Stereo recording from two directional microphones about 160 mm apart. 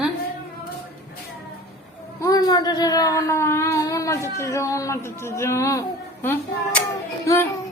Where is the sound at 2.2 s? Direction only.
25° left (ahead or behind).